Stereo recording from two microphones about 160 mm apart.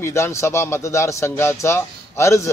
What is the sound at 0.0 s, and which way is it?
Speech, 15° left (ahead or behind).